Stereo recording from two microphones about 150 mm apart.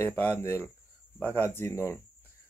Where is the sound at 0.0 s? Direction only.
15° left (ahead or behind).